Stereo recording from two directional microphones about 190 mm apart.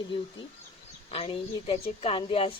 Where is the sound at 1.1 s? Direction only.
30° left (ahead or behind).